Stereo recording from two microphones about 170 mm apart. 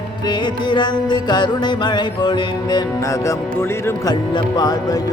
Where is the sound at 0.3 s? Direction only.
25° left (ahead or behind).